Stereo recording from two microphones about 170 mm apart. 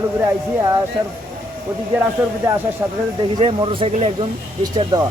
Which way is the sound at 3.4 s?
30° right (ahead or behind).